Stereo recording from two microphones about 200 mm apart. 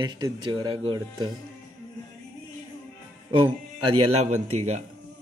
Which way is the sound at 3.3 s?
25° right (ahead or behind).